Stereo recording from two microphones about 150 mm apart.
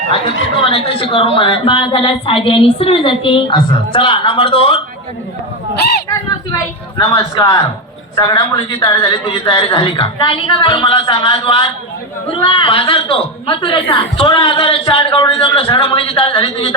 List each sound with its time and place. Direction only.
0.6 s a woman's voice: 40° left (ahead or behind)
6.9 s a man's voice: 25° left (ahead or behind)